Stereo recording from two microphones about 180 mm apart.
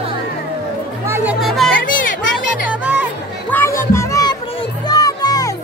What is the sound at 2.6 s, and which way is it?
Music, 10° right (ahead or behind).